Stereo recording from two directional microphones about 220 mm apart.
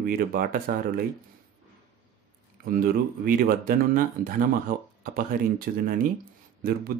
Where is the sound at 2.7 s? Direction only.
40° right (ahead or behind).